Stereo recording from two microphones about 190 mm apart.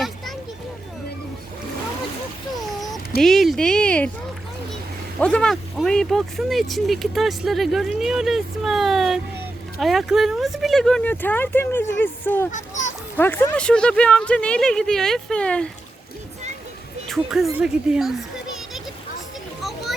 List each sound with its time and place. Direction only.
2.6 s a sound: centre (ahead or behind)
3.2 s speech: centre (ahead or behind)
5.2 s speech: 5° left (ahead or behind)
12.5 s a child's voice: 40° left (ahead or behind)
13.1 s speech: 10° left (ahead or behind)
17.1 s speech: centre (ahead or behind)